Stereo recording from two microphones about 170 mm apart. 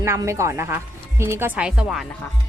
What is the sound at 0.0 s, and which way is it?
A woman's voice, 15° right (ahead or behind).